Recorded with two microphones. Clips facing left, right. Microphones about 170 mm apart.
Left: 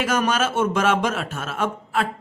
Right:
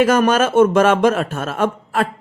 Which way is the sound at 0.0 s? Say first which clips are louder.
Right 7 dB; 55° right (ahead or behind).